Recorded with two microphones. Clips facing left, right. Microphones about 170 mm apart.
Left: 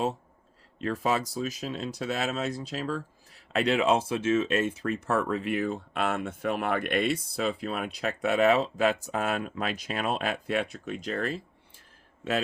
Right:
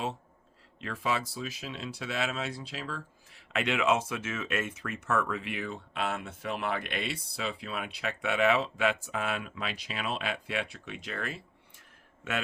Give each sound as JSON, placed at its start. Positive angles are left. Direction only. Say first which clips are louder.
{"t": 0.8, "sound": "speech", "louder": "left 5 dB", "side_deg": 40}